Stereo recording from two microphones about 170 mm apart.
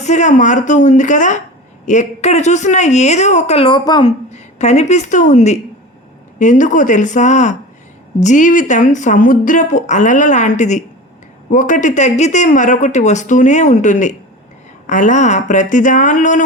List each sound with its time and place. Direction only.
0.0 s a woman's voice: 45° left (ahead or behind); by 4.1 s 25° left (ahead or behind)
4.3 s a woman's voice: 40° left (ahead or behind)